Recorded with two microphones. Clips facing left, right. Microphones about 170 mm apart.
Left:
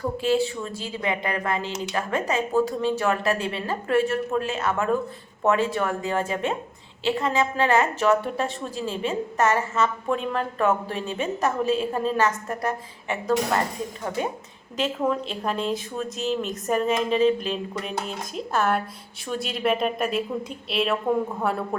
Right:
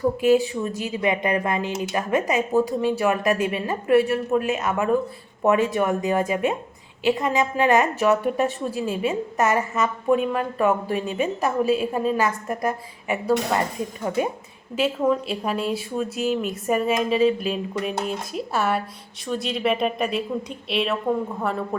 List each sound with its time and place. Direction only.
0.2 s a woman's voice: 15° right (ahead or behind)
14.8 s a woman's voice: 5° right (ahead or behind)